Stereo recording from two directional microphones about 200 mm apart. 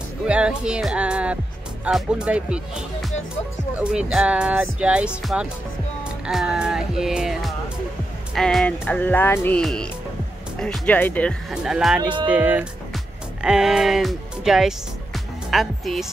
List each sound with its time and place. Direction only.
0.3 s speech: 5° right (ahead or behind)
6.2 s music: 5° right (ahead or behind)
11.5 s speech: 5° right (ahead or behind)
12.0 s speech: 25° right (ahead or behind)
12.3 s a woman's voice: 5° right (ahead or behind)